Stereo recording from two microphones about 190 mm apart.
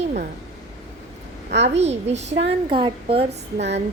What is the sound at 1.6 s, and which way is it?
Speech, 35° right (ahead or behind).